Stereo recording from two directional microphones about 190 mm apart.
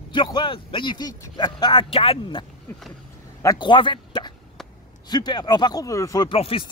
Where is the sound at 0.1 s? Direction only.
25° left (ahead or behind).